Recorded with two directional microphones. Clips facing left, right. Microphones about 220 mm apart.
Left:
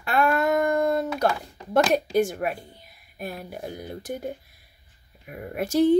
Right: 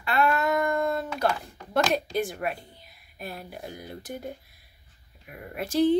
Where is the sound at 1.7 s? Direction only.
45° left (ahead or behind).